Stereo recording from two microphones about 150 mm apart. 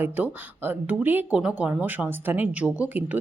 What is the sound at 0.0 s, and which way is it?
Speech, 15° right (ahead or behind).